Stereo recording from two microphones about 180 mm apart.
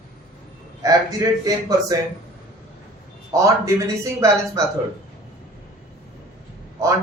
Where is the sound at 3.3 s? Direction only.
20° right (ahead or behind).